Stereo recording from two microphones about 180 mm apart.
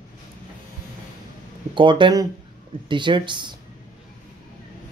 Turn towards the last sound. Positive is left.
turn(degrees=-25)  # may be behind; listen again after turning